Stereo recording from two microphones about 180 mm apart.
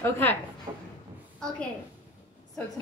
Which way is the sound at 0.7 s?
25° right (ahead or behind).